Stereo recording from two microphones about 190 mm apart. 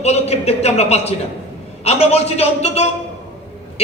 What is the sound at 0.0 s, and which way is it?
A man's voice, 35° left (ahead or behind).